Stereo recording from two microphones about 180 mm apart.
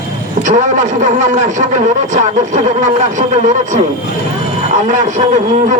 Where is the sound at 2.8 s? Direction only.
45° right (ahead or behind).